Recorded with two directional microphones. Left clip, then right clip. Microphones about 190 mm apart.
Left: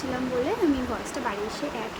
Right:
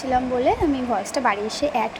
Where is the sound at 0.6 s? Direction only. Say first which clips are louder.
Right 4 dB; 20° right (ahead or behind).